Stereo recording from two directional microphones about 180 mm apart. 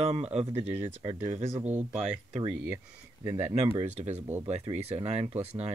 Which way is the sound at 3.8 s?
40° right (ahead or behind).